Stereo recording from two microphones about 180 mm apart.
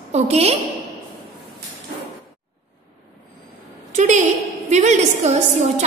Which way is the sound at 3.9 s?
40° right (ahead or behind).